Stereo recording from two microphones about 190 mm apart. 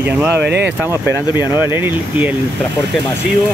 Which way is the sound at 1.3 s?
10° right (ahead or behind).